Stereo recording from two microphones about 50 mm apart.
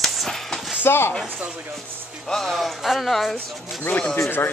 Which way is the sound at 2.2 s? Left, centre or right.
Centre.